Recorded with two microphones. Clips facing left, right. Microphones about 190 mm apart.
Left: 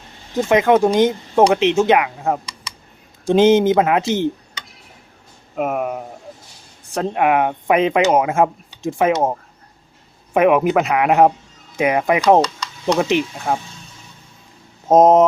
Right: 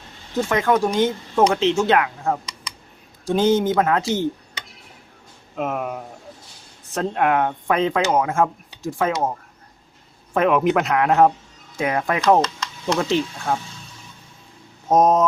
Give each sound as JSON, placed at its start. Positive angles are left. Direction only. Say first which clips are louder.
{"t": 0.3, "sound": "speech", "louder": "left 5 dB", "side_deg": 20}
{"t": 5.5, "sound": "speech", "louder": "left 4 dB", "side_deg": 10}
{"t": 10.3, "sound": "speech", "louder": "left 4 dB", "side_deg": 15}
{"t": 14.8, "sound": "speech", "louder": "left 5 dB", "side_deg": 20}